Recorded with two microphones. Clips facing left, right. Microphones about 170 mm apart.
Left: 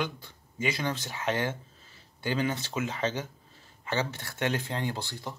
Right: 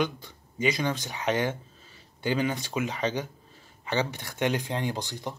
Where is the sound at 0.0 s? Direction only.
15° right (ahead or behind).